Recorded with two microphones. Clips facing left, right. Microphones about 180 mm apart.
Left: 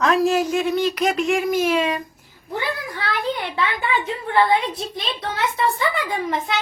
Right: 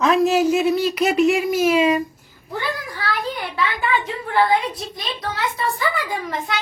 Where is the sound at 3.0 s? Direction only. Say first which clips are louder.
Left 2 dB; 20° left (ahead or behind).